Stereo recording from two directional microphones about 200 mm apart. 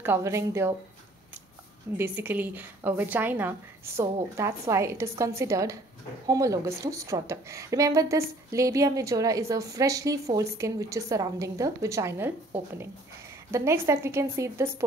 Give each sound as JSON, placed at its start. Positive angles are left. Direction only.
{"t": 0.0, "sound": "a woman's voice", "side_deg": -10}
{"t": 2.0, "sound": "a woman's voice", "side_deg": -10}